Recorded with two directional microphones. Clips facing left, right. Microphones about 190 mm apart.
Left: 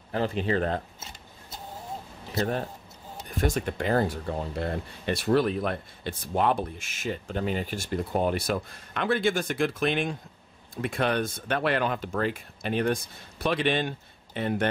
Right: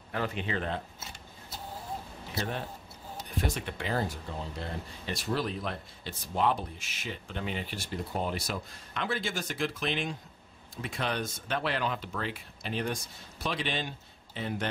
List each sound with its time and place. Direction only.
0.1 s speech: 35° left (ahead or behind)
2.3 s a man's voice: 45° left (ahead or behind); by 14.7 s 60° left (ahead or behind)